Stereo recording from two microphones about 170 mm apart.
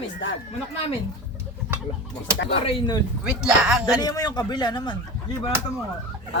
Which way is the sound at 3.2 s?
5° right (ahead or behind).